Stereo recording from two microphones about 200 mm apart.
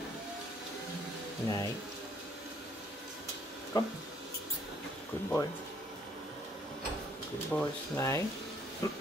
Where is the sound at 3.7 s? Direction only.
20° left (ahead or behind).